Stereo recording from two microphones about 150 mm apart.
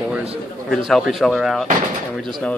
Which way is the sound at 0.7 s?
Centre (ahead or behind).